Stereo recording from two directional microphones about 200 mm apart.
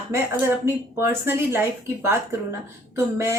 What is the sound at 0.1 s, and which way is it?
A woman's voice, 10° right (ahead or behind).